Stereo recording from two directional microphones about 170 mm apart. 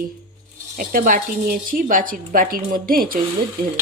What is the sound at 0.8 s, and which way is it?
Speech, 55° right (ahead or behind).